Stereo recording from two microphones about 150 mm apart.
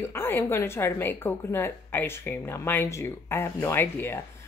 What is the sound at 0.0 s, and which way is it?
A woman's voice, 15° left (ahead or behind).